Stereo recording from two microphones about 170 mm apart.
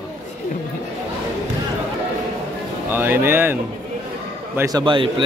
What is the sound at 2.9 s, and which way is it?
Speech, 15° right (ahead or behind).